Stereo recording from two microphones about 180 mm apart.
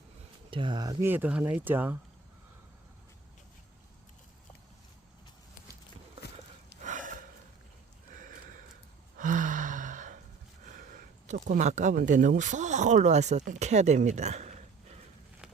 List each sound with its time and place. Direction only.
0.5 s speech: 25° right (ahead or behind)
1.1 s speech: 10° right (ahead or behind)
6.8 s gasp: 45° right (ahead or behind)
8.1 s sniff: 50° right (ahead or behind)
9.1 s gasp: 45° right (ahead or behind)
10.7 s speech: 45° right (ahead or behind)